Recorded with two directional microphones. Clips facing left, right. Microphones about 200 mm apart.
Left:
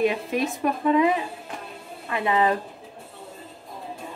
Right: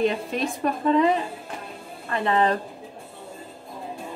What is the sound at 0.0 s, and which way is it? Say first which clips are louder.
A woman's voice: left 1 dB; 5° left (ahead or behind).